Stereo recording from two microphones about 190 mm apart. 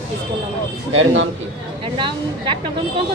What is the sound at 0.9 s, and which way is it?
Speech, 90° right.